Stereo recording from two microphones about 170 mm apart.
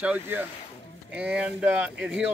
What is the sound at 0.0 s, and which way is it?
Speech, 10° right (ahead or behind).